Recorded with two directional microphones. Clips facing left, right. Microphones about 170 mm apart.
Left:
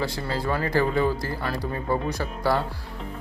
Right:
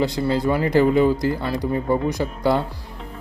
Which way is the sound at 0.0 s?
20° right (ahead or behind).